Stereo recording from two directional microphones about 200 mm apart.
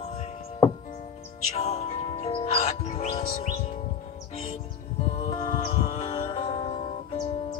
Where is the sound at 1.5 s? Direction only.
35° left (ahead or behind).